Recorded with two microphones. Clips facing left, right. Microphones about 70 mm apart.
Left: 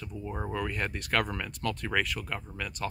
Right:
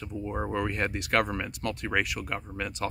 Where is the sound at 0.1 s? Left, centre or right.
Centre.